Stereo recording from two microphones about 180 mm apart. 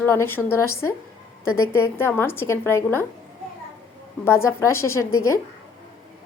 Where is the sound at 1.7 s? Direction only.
15° left (ahead or behind).